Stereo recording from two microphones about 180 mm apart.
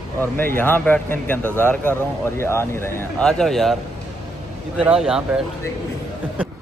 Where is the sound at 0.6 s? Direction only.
10° left (ahead or behind).